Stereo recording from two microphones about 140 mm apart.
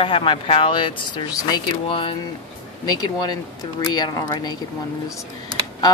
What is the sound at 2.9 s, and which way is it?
Speech, 30° left (ahead or behind).